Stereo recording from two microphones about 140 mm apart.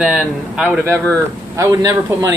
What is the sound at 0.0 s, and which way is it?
Speech, 5° right (ahead or behind).